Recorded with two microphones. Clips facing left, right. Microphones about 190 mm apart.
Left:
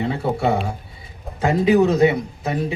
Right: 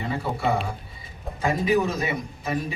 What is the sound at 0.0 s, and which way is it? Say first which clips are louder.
Speech: left 6 dB; 65° left (ahead or behind).